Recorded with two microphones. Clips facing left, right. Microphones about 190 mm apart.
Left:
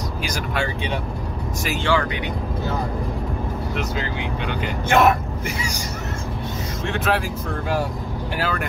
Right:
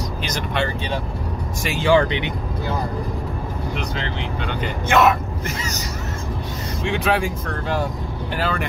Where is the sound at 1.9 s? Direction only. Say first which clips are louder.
Right 7 dB; 25° right (ahead or behind).